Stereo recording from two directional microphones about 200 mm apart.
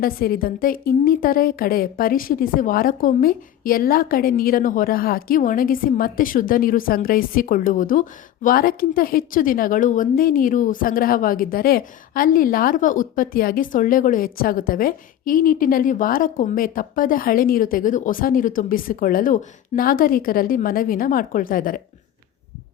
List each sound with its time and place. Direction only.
0.0 s a woman's voice: 45° left (ahead or behind)